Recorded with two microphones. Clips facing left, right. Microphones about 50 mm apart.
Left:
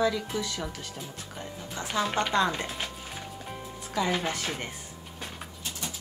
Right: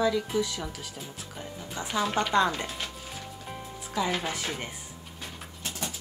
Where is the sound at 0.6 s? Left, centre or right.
Centre.